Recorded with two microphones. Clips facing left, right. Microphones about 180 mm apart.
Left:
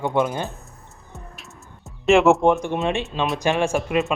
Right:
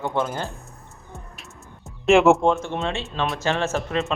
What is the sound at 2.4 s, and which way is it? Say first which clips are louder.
A man's voice: left 3 dB; 15° left (ahead or behind).